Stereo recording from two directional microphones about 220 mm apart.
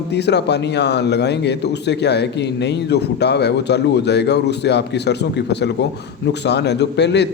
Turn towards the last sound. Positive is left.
turn(degrees=50)  # may be behind; listen again after turning